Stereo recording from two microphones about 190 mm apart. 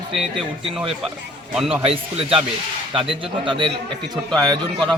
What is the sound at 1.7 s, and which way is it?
A man's voice, 30° right (ahead or behind).